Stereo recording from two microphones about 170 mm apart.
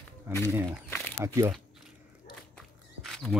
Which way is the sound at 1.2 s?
15° right (ahead or behind).